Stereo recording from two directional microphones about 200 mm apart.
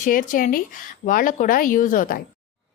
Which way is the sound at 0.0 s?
40° left (ahead or behind).